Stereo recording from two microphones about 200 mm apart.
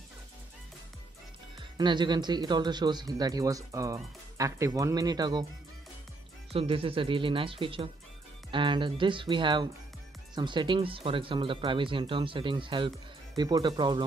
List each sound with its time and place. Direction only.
1.8 s speech: 20° right (ahead or behind)
6.5 s speech: 25° right (ahead or behind)